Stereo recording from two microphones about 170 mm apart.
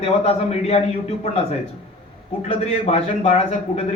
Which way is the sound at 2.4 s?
40° left (ahead or behind).